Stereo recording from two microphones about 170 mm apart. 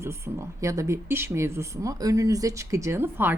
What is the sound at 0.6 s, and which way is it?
Speech, 20° right (ahead or behind).